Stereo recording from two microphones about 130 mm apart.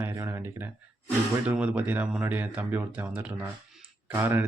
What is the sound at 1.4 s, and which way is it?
Speech, 10° right (ahead or behind).